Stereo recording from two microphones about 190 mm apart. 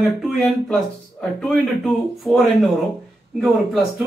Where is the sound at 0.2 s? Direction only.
Centre (ahead or behind).